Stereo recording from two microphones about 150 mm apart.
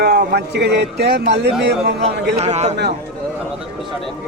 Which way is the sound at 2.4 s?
45° right (ahead or behind).